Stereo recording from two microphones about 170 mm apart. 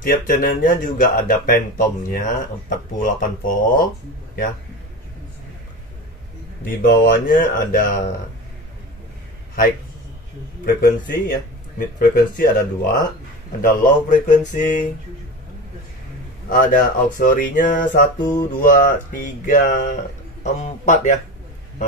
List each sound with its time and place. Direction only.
0.0 s speech: 55° left (ahead or behind)
6.8 s speech: 55° left (ahead or behind)
10.6 s speech: 55° left (ahead or behind)
16.4 s speech: 50° left (ahead or behind)